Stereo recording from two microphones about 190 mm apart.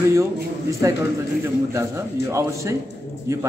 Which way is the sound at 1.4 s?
15° right (ahead or behind).